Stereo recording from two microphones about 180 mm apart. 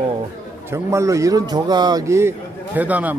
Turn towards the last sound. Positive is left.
turn(degrees=-10)  # may be behind; listen again after turning